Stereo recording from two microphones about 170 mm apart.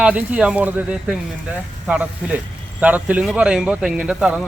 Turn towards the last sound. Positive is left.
turn(degrees=-5)  # may be behind; listen again after turning